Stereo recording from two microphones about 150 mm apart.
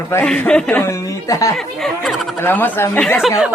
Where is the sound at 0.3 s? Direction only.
5° left (ahead or behind); by 1.5 s 20° left (ahead or behind).